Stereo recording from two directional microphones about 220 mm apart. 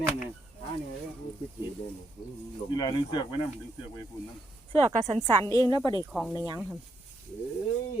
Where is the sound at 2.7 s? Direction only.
20° left (ahead or behind).